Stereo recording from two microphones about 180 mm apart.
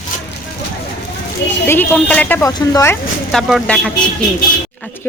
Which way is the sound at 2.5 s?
20° left (ahead or behind).